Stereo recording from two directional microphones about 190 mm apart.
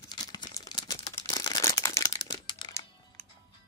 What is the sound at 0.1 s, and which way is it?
Crumpling, 20° left (ahead or behind).